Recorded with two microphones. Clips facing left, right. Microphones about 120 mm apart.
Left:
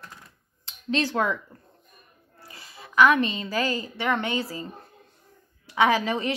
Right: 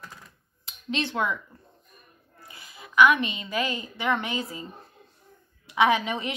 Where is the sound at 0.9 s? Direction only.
35° left (ahead or behind).